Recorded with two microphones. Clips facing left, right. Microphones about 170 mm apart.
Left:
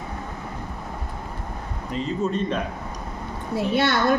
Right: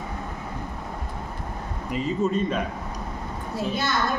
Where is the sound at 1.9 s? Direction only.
5° right (ahead or behind).